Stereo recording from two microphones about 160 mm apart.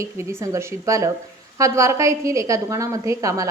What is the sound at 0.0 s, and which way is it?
A woman's voice, 15° right (ahead or behind).